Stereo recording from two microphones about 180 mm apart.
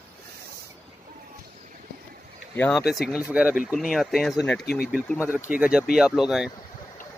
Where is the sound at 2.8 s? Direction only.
5° right (ahead or behind).